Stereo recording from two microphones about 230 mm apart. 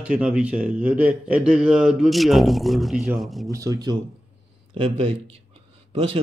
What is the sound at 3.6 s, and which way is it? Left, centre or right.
Mantra, centre.